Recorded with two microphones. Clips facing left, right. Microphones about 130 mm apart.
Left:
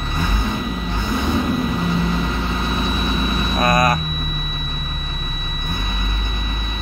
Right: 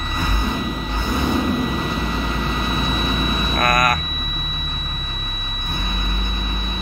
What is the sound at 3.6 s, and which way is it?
Vehicle, 25° left (ahead or behind).